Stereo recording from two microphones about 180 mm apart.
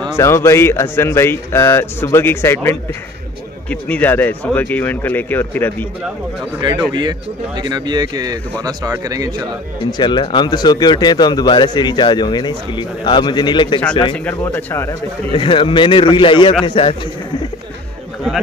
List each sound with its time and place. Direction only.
0.1 s speech: 15° left (ahead or behind)
3.8 s speech: 10° left (ahead or behind)
6.9 s speech: 25° right (ahead or behind)
9.8 s speech: 25° left (ahead or behind)
14.1 s speech: 10° left (ahead or behind)
15.3 s speech: 30° left (ahead or behind)